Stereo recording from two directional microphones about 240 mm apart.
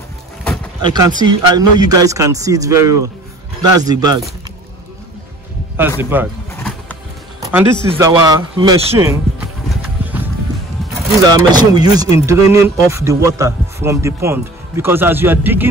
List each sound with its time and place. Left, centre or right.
0.8 s a man's voice: centre
5.8 s a man's voice: centre
6.5 s wild animals: centre
7.3 s music: centre
7.9 s a man's voice: centre
11.1 s a man's voice: centre